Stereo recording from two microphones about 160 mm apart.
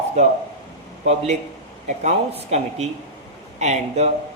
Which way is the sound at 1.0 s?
45° right (ahead or behind).